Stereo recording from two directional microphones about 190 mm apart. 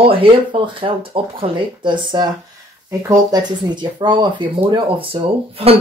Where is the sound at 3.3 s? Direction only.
25° right (ahead or behind).